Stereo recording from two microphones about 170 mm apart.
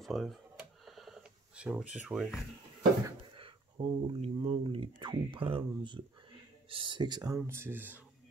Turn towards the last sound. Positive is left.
turn(degrees=-10)  # may be behind; listen again after turning